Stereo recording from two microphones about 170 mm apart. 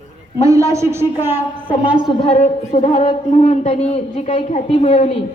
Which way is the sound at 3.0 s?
35° left (ahead or behind).